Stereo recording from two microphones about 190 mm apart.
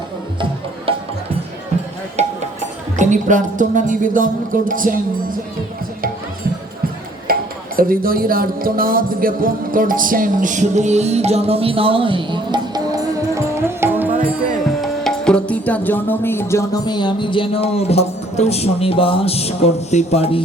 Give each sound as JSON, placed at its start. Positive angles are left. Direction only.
{"t": 0.9, "sound": "music", "side_deg": -30}
{"t": 2.2, "sound": "a sound", "side_deg": -35}
{"t": 3.0, "sound": "speech", "side_deg": -40}
{"t": 7.3, "sound": "tick-tock", "side_deg": -50}
{"t": 7.8, "sound": "speech", "side_deg": -50}
{"t": 14.8, "sound": "music", "side_deg": 0}